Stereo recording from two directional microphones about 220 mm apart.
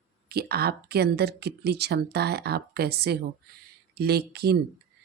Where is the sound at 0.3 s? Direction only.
45° right (ahead or behind).